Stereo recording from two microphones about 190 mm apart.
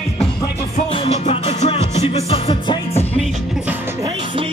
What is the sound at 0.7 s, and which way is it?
Music, 30° left (ahead or behind).